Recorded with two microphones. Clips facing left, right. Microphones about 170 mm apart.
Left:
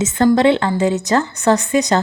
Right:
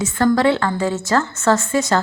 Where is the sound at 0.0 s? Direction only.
20° left (ahead or behind).